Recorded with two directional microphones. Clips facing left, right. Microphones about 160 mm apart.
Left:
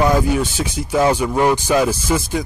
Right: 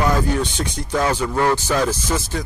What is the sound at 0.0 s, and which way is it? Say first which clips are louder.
Speech: left 3 dB; 10° left (ahead or behind).